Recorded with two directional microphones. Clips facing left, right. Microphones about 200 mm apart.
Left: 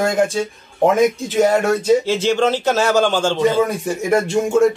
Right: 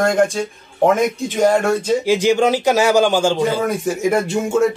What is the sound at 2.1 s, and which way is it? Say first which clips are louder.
A man's voice: right 2 dB; 10° right (ahead or behind).